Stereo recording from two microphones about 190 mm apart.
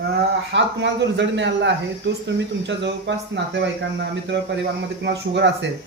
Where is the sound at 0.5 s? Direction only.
65° right (ahead or behind).